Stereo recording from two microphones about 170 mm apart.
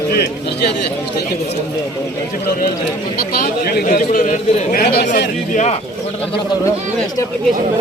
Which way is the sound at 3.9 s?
50° left (ahead or behind).